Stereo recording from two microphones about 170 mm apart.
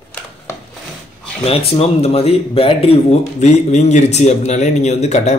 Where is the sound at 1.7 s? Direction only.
35° left (ahead or behind).